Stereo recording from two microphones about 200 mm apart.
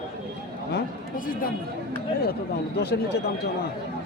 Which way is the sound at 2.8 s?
55° left (ahead or behind).